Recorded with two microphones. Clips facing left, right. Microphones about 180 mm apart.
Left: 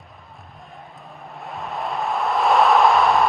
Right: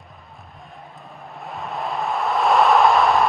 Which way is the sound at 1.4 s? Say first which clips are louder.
Even; centre (ahead or behind).